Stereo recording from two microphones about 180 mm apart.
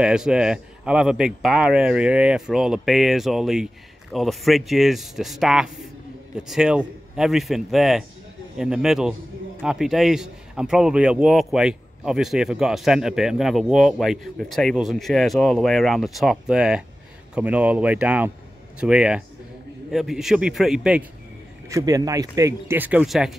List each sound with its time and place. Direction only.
0.0 s a man's voice: 5° right (ahead or behind)
21.6 s speech: 20° right (ahead or behind); by 23.3 s centre (ahead or behind)